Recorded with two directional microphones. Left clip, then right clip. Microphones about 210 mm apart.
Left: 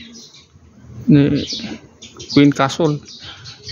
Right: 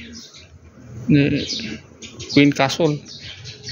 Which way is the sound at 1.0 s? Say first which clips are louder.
Left 3 dB; 20° left (ahead or behind).